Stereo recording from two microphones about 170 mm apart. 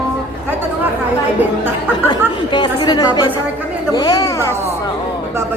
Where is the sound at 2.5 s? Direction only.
25° left (ahead or behind).